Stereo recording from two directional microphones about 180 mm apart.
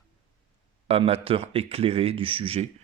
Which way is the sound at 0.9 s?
30° right (ahead or behind).